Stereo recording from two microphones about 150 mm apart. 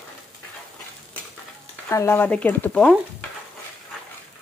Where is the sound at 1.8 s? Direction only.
15° left (ahead or behind).